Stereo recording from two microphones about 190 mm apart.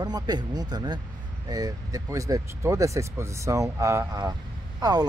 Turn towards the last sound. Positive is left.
turn(degrees=-20)  # may be behind; listen again after turning